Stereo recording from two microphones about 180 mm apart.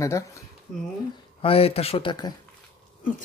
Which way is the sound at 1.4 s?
30° left (ahead or behind).